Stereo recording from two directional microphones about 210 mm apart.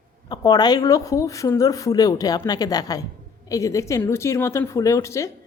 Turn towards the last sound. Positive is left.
turn(degrees=15)  # may be behind; listen again after turning